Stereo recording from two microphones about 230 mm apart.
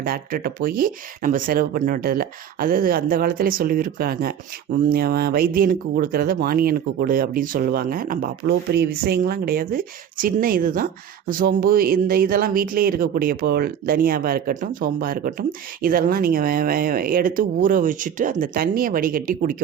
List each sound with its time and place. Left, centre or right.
0.0 s speech: right